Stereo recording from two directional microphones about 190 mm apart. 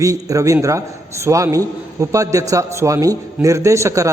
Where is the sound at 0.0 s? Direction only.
15° right (ahead or behind).